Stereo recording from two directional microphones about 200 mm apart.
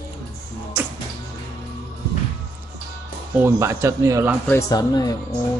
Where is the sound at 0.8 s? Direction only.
10° right (ahead or behind).